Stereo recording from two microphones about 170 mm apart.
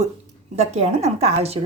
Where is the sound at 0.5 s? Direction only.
40° right (ahead or behind).